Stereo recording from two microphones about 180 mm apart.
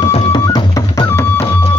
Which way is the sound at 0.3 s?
20° left (ahead or behind).